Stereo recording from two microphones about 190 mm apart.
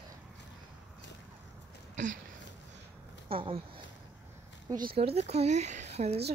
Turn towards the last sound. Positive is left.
turn(degrees=-35)  # may be behind; listen again after turning